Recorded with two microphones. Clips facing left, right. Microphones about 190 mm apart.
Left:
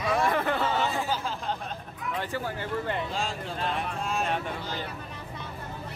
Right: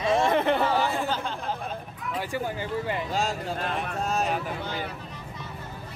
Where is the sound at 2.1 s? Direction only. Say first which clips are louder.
Right 3 dB; 15° right (ahead or behind).